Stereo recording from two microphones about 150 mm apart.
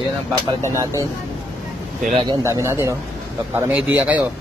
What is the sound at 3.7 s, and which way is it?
Speech, 5° right (ahead or behind).